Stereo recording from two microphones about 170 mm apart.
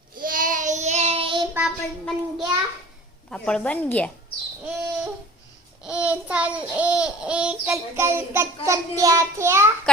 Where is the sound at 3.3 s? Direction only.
5° left (ahead or behind).